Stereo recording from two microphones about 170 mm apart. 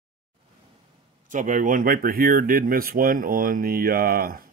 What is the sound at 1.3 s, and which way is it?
Speech, 50° right (ahead or behind).